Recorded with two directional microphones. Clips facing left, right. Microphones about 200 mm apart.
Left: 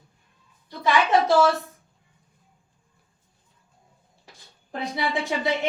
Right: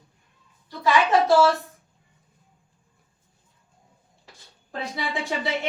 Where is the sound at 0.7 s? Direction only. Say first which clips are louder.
Right 1 dB; 15° left (ahead or behind).